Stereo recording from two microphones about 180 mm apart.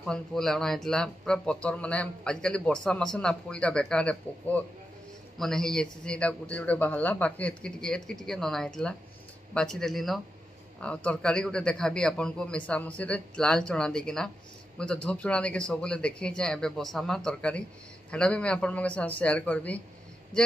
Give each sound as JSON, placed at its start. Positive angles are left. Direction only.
{"t": 0.0, "sound": "a man's voice", "side_deg": 0}